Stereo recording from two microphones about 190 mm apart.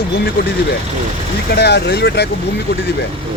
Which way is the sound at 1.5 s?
60° left (ahead or behind).